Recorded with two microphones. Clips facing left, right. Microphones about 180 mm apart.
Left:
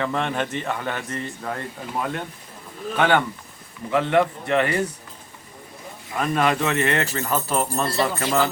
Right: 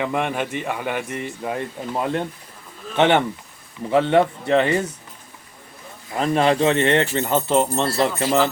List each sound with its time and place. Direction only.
0.0 s speech: 15° right (ahead or behind)
6.1 s speech: 25° right (ahead or behind)